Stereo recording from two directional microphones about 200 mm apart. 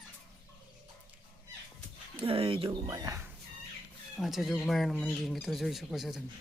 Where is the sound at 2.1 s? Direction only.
25° right (ahead or behind).